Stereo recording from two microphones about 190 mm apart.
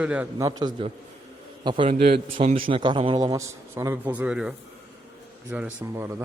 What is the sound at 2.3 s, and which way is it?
A man's voice, 30° right (ahead or behind).